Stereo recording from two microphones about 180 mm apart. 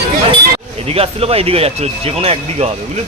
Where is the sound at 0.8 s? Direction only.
35° right (ahead or behind).